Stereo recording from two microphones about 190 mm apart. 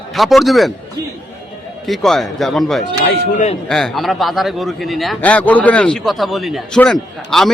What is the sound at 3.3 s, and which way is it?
Speech, 35° left (ahead or behind).